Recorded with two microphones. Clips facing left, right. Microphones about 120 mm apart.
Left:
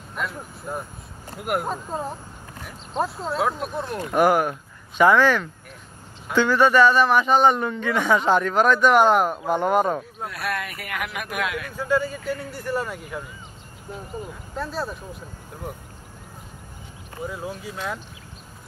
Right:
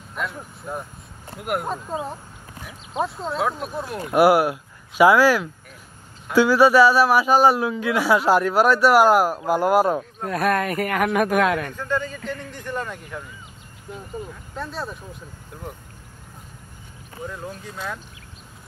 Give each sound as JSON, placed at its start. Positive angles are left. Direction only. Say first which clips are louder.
{"t": 0.1, "sound": "a man's voice", "louder": "even", "side_deg": 0}
{"t": 10.2, "sound": "speech", "louder": "right 12 dB", "side_deg": -45}
{"t": 11.7, "sound": "speech", "louder": "left 3 dB", "side_deg": 10}
{"t": 14.5, "sound": "speech", "louder": "left 3 dB", "side_deg": 0}
{"t": 17.3, "sound": "speech", "louder": "left 3 dB", "side_deg": 5}